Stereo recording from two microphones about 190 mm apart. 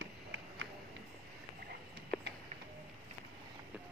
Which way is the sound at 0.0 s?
80° right.